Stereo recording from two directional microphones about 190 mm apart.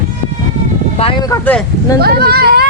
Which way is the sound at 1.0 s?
25° left (ahead or behind).